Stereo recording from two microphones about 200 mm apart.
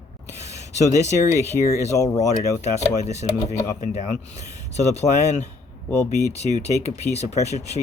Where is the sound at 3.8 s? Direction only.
35° left (ahead or behind).